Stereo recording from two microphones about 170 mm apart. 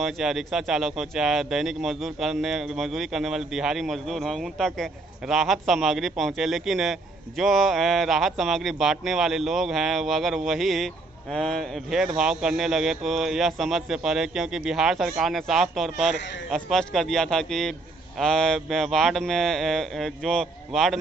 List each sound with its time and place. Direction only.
0.0 s speech: centre (ahead or behind)